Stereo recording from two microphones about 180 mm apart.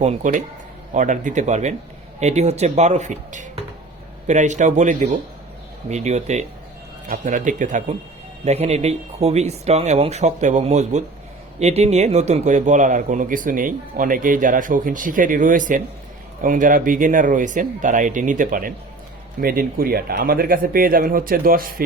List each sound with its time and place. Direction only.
0.0 s speech: 40° right (ahead or behind)